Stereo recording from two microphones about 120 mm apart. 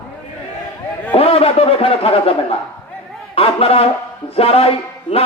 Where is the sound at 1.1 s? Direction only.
55° left (ahead or behind).